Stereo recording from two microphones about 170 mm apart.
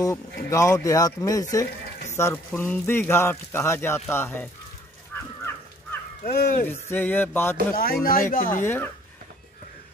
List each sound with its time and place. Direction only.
0.0 s speech: 20° left (ahead or behind)
5.1 s crow: 15° left (ahead or behind)
6.2 s speech: 65° left (ahead or behind)
6.9 s speech: 10° left (ahead or behind)
7.7 s speech: 60° left (ahead or behind)
8.6 s speech: 10° left (ahead or behind)